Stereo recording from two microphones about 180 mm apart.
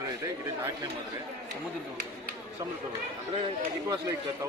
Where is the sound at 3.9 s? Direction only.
15° right (ahead or behind).